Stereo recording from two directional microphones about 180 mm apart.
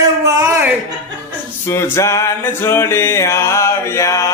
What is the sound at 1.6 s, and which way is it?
Music, 15° left (ahead or behind).